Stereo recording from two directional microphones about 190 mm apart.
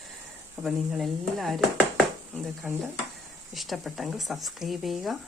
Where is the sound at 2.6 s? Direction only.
Centre (ahead or behind).